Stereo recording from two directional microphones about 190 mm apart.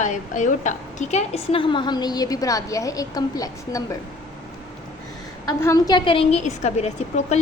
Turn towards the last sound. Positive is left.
turn(degrees=35)  # may be behind; listen again after turning